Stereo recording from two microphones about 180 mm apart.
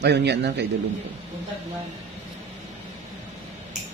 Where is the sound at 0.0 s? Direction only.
70° right (ahead or behind).